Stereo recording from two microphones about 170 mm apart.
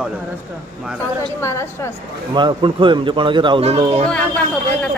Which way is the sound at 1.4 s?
15° left (ahead or behind).